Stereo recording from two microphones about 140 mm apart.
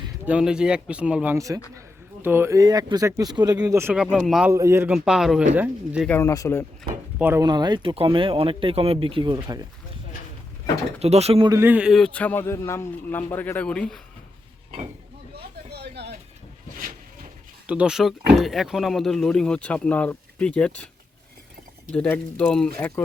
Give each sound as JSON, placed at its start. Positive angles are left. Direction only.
{"t": 0.3, "sound": "speech", "side_deg": -5}
{"t": 1.4, "sound": "speech", "side_deg": -25}
{"t": 3.9, "sound": "speech", "side_deg": -5}
{"t": 4.5, "sound": "speech", "side_deg": -20}
{"t": 4.9, "sound": "speech", "side_deg": -5}
{"t": 6.1, "sound": "a man's voice", "side_deg": 20}
{"t": 7.2, "sound": "speech", "side_deg": -15}
{"t": 7.4, "sound": "speech", "side_deg": -30}
{"t": 11.0, "sound": "speech", "side_deg": -50}
{"t": 11.6, "sound": "a man's voice", "side_deg": -10}
{"t": 17.7, "sound": "speech", "side_deg": -5}
{"t": 21.9, "sound": "a man's voice", "side_deg": 10}